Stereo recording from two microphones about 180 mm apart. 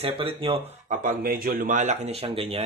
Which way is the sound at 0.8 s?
45° right (ahead or behind).